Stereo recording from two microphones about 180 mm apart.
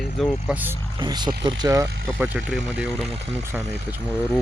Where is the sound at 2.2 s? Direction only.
5° right (ahead or behind).